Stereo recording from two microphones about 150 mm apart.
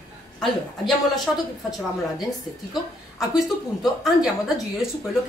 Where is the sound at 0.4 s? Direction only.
Centre (ahead or behind).